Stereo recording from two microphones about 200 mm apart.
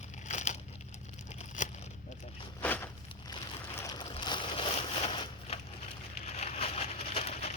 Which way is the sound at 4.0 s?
25° left (ahead or behind).